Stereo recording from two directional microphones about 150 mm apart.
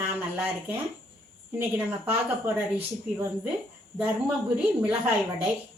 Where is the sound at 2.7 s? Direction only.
10° right (ahead or behind).